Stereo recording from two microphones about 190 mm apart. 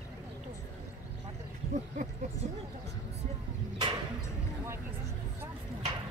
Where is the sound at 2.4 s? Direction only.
40° right (ahead or behind).